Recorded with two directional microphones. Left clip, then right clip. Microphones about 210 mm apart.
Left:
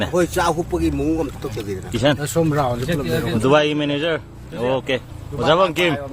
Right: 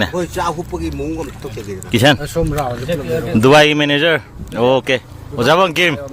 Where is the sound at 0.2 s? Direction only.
50° left (ahead or behind).